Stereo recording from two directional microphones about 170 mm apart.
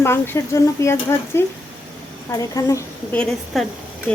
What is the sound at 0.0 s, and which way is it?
Speech, 15° left (ahead or behind).